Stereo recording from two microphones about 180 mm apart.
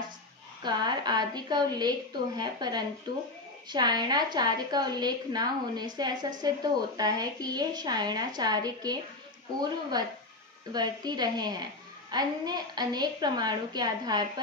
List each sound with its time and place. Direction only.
0.7 s a woman's voice: 25° right (ahead or behind)